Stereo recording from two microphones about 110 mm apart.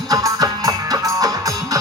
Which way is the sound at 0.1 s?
35° right (ahead or behind).